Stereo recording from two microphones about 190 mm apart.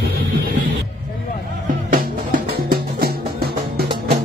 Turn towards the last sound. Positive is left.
turn(degrees=-50)  # may be behind; listen again after turning